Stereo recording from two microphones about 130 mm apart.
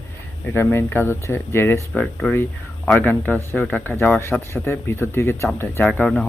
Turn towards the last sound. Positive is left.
turn(degrees=5)  # may be behind; listen again after turning